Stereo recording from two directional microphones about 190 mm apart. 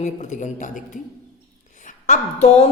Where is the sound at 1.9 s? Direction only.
40° left (ahead or behind).